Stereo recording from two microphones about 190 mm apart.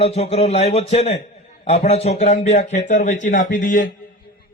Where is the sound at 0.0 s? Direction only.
35° left (ahead or behind).